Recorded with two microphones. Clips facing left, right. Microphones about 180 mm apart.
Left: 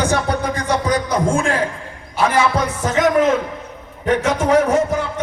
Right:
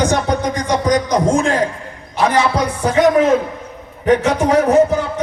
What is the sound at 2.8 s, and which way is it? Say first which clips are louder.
Music: right 3 dB; 10° right (ahead or behind).